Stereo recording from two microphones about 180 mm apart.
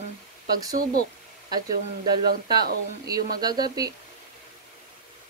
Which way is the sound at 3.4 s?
20° right (ahead or behind).